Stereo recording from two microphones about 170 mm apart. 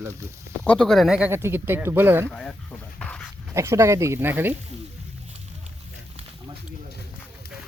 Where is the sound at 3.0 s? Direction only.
5° left (ahead or behind).